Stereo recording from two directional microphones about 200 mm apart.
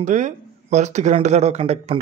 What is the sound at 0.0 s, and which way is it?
Speech, 35° right (ahead or behind).